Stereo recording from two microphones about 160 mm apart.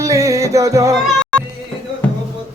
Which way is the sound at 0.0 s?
20° right (ahead or behind).